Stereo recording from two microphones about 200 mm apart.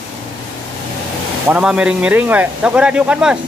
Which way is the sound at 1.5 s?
5° right (ahead or behind).